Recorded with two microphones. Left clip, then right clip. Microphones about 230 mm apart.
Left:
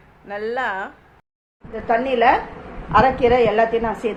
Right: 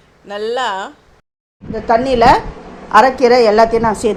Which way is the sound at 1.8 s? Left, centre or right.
Right.